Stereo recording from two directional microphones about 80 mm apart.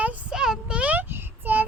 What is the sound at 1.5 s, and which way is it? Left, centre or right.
Child singing, right.